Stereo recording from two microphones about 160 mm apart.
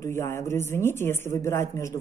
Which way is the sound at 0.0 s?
15° left (ahead or behind).